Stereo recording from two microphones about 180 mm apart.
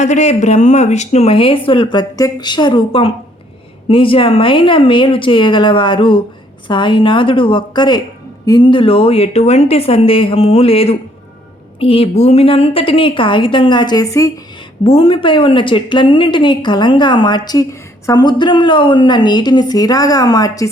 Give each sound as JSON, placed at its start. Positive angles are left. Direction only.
{"t": 0.0, "sound": "speech", "side_deg": 40}
{"t": 14.8, "sound": "speech", "side_deg": 30}